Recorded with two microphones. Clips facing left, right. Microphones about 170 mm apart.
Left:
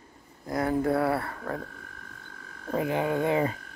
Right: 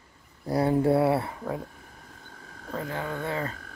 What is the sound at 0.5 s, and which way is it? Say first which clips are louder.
Speech: right 3 dB; 30° right (ahead or behind).